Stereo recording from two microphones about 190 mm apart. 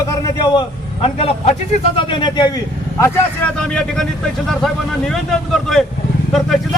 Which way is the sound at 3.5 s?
5° left (ahead or behind).